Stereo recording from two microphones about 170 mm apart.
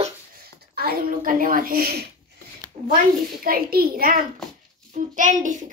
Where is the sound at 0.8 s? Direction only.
60° right (ahead or behind).